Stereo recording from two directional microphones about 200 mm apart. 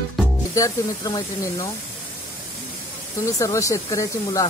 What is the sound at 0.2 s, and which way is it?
Music, centre (ahead or behind).